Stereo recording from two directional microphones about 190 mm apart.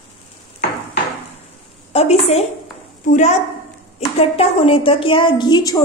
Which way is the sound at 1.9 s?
35° left (ahead or behind).